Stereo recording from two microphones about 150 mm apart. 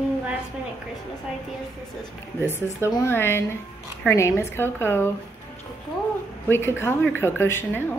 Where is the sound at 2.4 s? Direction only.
15° left (ahead or behind).